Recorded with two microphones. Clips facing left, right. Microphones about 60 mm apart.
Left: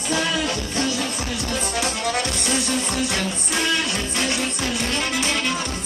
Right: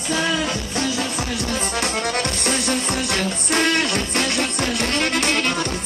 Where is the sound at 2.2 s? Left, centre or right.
Right.